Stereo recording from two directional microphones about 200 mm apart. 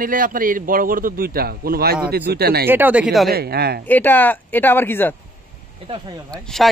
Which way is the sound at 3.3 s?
50° right (ahead or behind).